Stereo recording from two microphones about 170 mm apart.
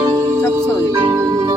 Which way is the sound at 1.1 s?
20° right (ahead or behind).